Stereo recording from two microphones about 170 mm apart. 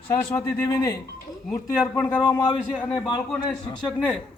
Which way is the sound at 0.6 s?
25° left (ahead or behind).